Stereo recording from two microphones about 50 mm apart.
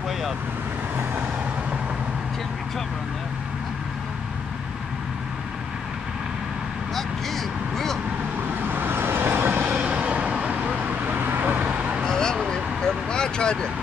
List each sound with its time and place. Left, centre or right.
7.0 s a sound: centre
8.6 s vehicle: right
9.8 s vehicle: right
11.6 s vehicle: right
12.0 s vehicle: centre